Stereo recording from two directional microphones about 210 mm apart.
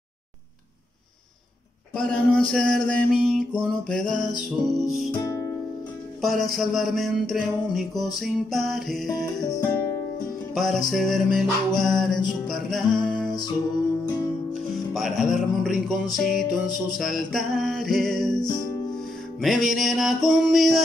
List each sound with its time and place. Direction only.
2.0 s music: 5° left (ahead or behind)
5.2 s music: 15° left (ahead or behind)
6.2 s music: centre (ahead or behind)
9.2 s music: 15° left (ahead or behind)
10.5 s music: centre (ahead or behind)
14.5 s music: centre (ahead or behind)
18.4 s music: 20° left (ahead or behind)
19.4 s music: centre (ahead or behind)